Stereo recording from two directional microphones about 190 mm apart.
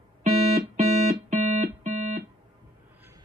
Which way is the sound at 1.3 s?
40° right (ahead or behind).